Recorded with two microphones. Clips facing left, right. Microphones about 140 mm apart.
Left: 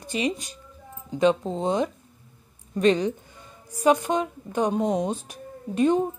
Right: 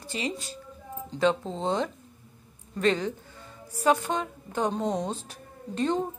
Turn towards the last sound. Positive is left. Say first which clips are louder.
# left 6 dB
turn(degrees=15)  # may be behind; listen again after turning